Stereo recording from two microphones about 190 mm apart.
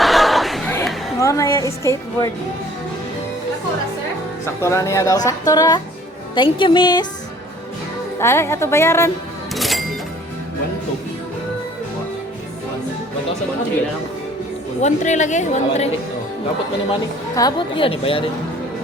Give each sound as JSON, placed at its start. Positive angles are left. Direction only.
{"t": 0.0, "sound": "a sound", "side_deg": 0}
{"t": 1.2, "sound": "speech", "side_deg": 15}
{"t": 4.6, "sound": "a woman's voice", "side_deg": 15}
{"t": 8.2, "sound": "speech", "side_deg": 15}
{"t": 9.6, "sound": "music", "side_deg": 0}
{"t": 14.8, "sound": "a woman's voice", "side_deg": 40}
{"t": 17.3, "sound": "a woman's voice", "side_deg": 20}